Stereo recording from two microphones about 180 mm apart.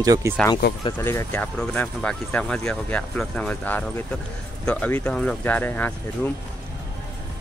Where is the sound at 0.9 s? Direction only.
10° left (ahead or behind).